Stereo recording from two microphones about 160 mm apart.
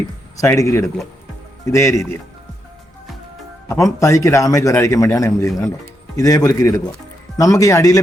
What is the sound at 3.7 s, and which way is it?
A man's voice, 20° left (ahead or behind).